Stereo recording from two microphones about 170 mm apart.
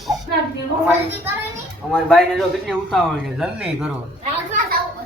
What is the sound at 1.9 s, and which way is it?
A man's voice, centre (ahead or behind).